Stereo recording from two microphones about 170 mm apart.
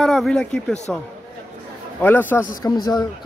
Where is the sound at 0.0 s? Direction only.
Centre (ahead or behind).